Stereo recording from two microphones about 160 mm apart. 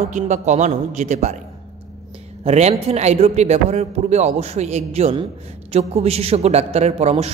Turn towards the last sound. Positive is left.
turn(degrees=-40)  # may be behind; listen again after turning